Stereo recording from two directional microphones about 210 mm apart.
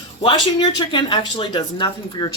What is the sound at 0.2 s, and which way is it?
Speech, 25° left (ahead or behind).